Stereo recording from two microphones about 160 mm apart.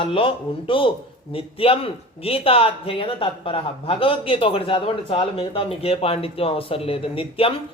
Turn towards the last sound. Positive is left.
turn(degrees=35)  # may be behind; listen again after turning